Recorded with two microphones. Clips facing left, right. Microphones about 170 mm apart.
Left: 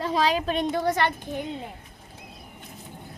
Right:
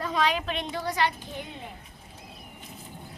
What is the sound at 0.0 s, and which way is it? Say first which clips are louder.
A woman's voice: left 3 dB; 30° left (ahead or behind).